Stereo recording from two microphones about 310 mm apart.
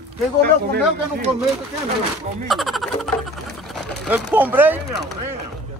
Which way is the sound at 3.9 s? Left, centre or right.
Centre.